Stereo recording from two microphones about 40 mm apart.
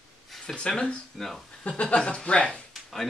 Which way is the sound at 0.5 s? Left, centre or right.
Left.